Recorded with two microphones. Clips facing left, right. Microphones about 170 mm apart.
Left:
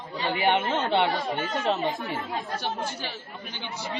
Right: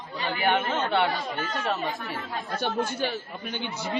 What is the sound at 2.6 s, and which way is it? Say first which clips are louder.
Speech: right 5 dB; 55° right (ahead or behind).